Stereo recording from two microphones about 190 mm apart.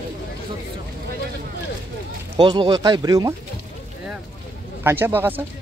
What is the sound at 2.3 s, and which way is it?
Speech, 25° right (ahead or behind).